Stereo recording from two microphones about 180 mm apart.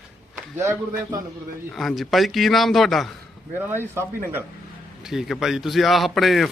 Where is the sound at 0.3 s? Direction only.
15° right (ahead or behind).